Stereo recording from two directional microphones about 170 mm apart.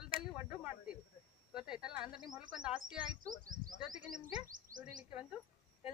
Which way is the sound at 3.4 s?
55° right (ahead or behind).